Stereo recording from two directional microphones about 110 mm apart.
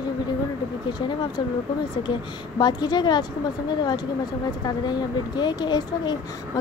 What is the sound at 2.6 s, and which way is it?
Speech, 40° left (ahead or behind).